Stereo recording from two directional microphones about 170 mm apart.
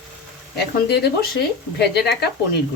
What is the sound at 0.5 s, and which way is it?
Speech, 75° left (ahead or behind).